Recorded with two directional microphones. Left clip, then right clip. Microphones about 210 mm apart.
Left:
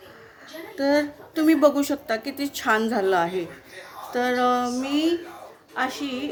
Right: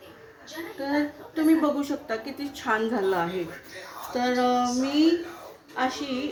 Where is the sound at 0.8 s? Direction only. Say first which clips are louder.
Left 6 dB; 55° left (ahead or behind).